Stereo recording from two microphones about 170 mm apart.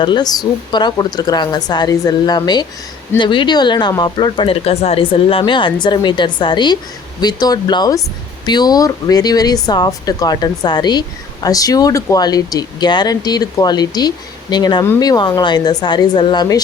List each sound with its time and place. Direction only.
0.0 s a woman's voice: 25° left (ahead or behind)